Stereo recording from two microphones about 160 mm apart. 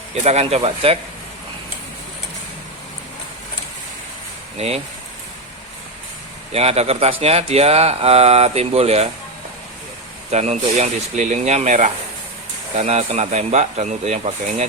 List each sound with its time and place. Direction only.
0.3 s speech: 40° right (ahead or behind)
4.5 s speech: 40° right (ahead or behind)
6.5 s speech: 40° right (ahead or behind)
10.3 s speech: 40° right (ahead or behind)